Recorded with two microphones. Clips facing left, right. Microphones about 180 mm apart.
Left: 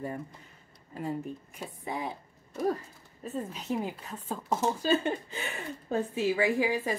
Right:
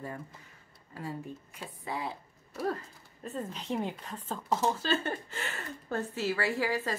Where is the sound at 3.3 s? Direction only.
10° left (ahead or behind).